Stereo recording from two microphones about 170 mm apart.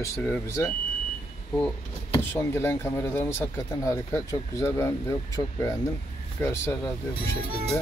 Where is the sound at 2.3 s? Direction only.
15° left (ahead or behind).